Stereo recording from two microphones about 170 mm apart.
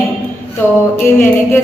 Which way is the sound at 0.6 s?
15° left (ahead or behind).